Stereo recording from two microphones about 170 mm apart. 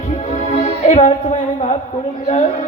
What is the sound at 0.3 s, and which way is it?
Music, 40° left (ahead or behind).